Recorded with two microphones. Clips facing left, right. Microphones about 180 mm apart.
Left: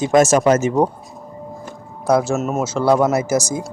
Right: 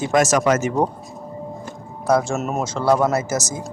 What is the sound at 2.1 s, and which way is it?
Speech, 5° left (ahead or behind).